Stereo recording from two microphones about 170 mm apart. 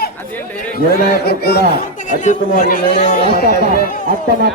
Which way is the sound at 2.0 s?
45° left (ahead or behind).